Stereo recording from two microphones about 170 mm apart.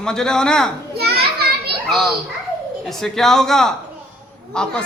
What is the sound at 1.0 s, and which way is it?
Children playing, 70° right (ahead or behind).